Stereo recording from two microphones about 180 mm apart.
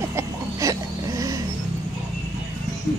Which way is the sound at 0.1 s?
15° right (ahead or behind).